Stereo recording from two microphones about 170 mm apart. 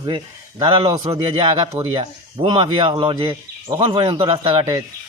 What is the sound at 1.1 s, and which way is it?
Speech, 35° right (ahead or behind).